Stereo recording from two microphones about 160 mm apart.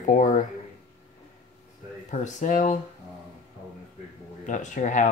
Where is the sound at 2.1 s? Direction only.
50° left (ahead or behind).